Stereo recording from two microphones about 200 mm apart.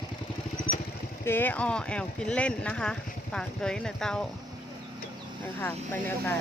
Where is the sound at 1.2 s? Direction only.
10° left (ahead or behind).